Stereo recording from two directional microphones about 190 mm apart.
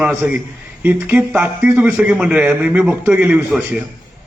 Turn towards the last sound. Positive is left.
turn(degrees=-5)  # may be behind; listen again after turning